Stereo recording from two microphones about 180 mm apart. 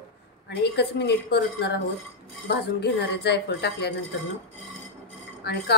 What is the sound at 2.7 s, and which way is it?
Speech, 65° left (ahead or behind).